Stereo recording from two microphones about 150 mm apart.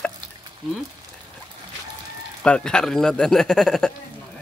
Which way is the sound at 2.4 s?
5° left (ahead or behind).